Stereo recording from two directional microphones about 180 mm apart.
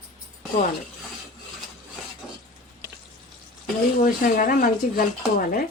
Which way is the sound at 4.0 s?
50° left (ahead or behind).